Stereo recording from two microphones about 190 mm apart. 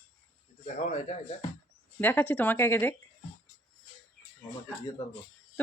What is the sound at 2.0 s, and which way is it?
Speech, 10° left (ahead or behind).